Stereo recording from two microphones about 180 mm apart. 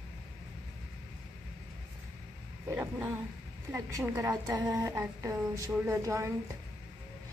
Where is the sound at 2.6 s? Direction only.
15° right (ahead or behind).